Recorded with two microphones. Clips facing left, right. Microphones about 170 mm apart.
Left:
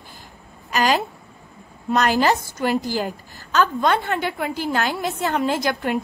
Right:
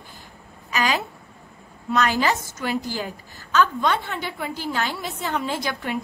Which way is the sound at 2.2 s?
35° left (ahead or behind).